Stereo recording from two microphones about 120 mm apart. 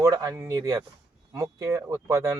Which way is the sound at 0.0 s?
30° right (ahead or behind).